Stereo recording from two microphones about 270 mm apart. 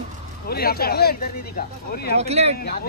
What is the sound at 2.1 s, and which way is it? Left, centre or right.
Speech, right.